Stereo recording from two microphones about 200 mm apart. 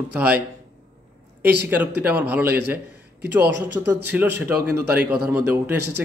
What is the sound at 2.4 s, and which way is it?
Speech, 55° right (ahead or behind).